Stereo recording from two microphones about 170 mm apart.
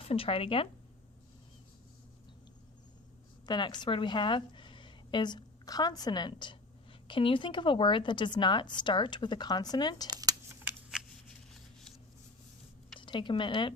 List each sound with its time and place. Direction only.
0.0 s speech: 35° left (ahead or behind)
3.4 s a woman's voice: 25° left (ahead or behind)
10.1 s computer keyboard: 20° right (ahead or behind)
10.6 s shuffling cards: 10° right (ahead or behind)
13.0 s speech: 30° left (ahead or behind)